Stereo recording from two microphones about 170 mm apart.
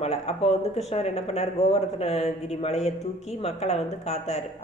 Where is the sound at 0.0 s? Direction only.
35° left (ahead or behind).